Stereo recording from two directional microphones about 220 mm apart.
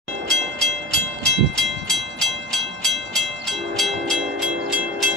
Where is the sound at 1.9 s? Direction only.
Centre (ahead or behind).